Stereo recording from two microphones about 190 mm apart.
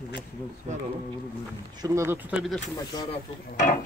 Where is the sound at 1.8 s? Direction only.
15° right (ahead or behind).